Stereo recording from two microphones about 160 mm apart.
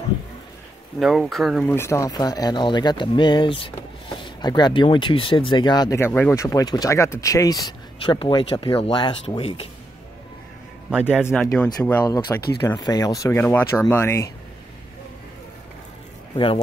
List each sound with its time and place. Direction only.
0.9 s speech: centre (ahead or behind)
1.6 s speech: 15° left (ahead or behind); by 9.7 s 35° left (ahead or behind)
10.9 s a man's voice: 5° right (ahead or behind)
11.5 s speech: 10° left (ahead or behind)
12.5 s speech: 20° left (ahead or behind)
16.3 s a man's voice: 35° left (ahead or behind)